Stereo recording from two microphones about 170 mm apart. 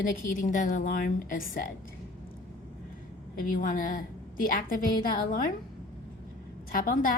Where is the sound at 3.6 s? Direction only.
50° left (ahead or behind).